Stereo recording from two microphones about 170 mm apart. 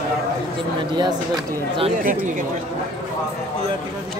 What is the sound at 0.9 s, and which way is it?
Speech, 25° right (ahead or behind).